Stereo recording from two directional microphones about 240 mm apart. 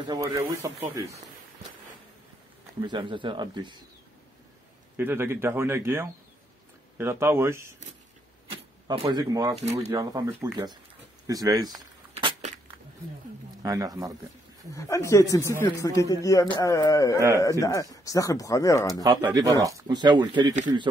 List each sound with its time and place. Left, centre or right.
0.0 s speech: centre
2.8 s speech: centre
4.9 s speech: centre
8.8 s speech: centre
11.2 s a sound: centre
13.6 s speech: centre
14.7 s speech: centre
19.0 s speech: centre